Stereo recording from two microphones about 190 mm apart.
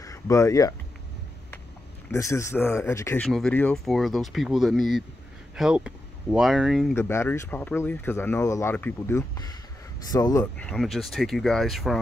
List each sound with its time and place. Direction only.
0.0 s speech: 15° left (ahead or behind)
2.0 s speech: 15° left (ahead or behind)
3.3 s speech: centre (ahead or behind)
7.0 s speech: 15° left (ahead or behind)
10.4 s speech: 5° left (ahead or behind)